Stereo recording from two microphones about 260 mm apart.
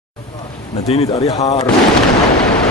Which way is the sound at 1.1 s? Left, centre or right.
Centre.